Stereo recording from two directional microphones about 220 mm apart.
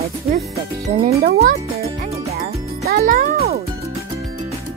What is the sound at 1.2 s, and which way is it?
A child's voice, 45° right (ahead or behind).